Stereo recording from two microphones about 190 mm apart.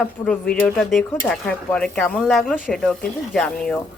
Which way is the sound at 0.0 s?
5° left (ahead or behind).